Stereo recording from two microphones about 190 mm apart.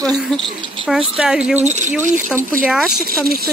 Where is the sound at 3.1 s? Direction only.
50° right (ahead or behind).